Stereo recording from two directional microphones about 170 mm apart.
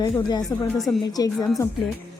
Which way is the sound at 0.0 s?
25° left (ahead or behind).